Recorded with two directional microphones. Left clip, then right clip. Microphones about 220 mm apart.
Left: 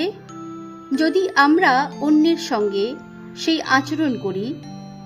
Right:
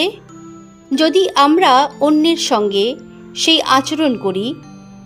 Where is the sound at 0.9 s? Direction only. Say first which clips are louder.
Right 5 dB; 25° right (ahead or behind).